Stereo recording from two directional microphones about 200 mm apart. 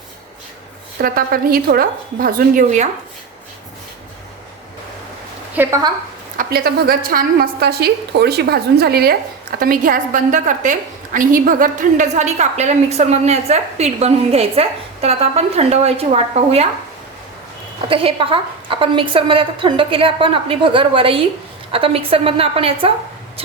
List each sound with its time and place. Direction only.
1.0 s a woman's voice: 45° right (ahead or behind)
5.5 s a woman's voice: 15° right (ahead or behind)
6.3 s a woman's voice: 45° right (ahead or behind); by 16.6 s 30° right (ahead or behind)
17.8 s a woman's voice: 25° right (ahead or behind)